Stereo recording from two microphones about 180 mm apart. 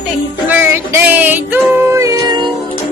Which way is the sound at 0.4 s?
10° right (ahead or behind).